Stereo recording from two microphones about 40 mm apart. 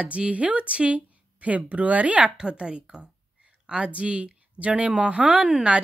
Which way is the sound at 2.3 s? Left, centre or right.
Right.